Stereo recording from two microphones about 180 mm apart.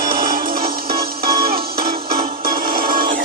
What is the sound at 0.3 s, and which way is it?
Music, 55° right (ahead or behind).